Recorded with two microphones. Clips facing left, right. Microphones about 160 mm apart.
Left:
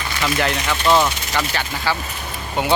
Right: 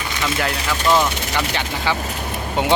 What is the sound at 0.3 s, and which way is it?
Speech, 5° right (ahead or behind).